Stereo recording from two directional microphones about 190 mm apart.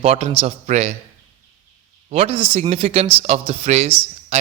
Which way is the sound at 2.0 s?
35° right (ahead or behind).